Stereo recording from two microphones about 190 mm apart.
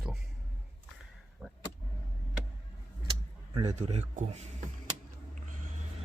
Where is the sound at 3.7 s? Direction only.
35° right (ahead or behind).